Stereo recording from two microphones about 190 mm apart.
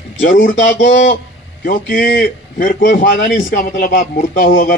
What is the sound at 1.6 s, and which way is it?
A man's voice, 50° left (ahead or behind).